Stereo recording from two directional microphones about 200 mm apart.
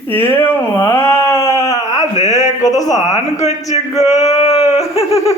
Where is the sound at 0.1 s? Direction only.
10° left (ahead or behind).